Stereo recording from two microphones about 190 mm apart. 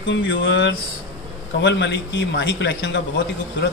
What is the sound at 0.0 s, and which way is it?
Speech, 75° left (ahead or behind).